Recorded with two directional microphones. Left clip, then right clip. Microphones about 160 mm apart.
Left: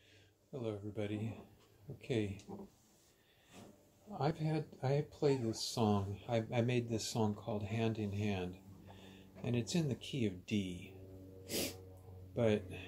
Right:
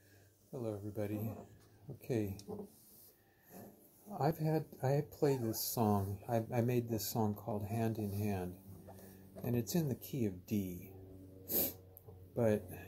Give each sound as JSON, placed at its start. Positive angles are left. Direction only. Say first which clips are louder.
{"t": 0.5, "sound": "speech", "louder": "even", "side_deg": -15}
{"t": 4.1, "sound": "speech", "louder": "right 3 dB", "side_deg": -30}
{"t": 11.4, "sound": "music", "louder": "left 1 dB", "side_deg": -15}
{"t": 12.4, "sound": "speech", "louder": "even", "side_deg": -15}